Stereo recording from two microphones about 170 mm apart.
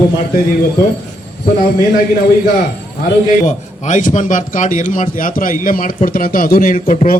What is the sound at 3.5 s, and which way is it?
A man's voice, 45° left (ahead or behind).